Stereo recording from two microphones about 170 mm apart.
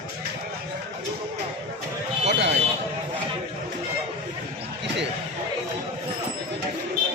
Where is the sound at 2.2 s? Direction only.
90° right.